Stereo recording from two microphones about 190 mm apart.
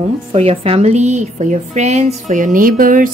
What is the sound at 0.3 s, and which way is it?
A woman's voice, 30° right (ahead or behind).